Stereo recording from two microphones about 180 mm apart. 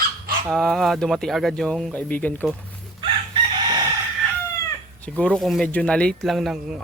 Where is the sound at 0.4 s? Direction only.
Centre (ahead or behind).